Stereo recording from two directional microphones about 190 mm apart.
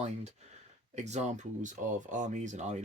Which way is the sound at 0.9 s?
35° right (ahead or behind).